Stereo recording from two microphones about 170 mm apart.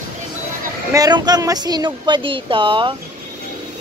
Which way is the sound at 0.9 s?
25° right (ahead or behind).